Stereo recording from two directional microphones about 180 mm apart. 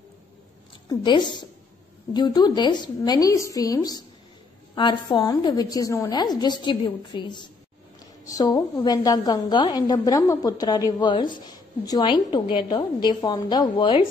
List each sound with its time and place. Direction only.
0.8 s a woman's voice: 25° left (ahead or behind)